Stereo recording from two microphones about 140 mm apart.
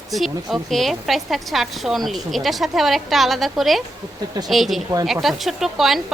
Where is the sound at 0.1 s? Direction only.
Centre (ahead or behind).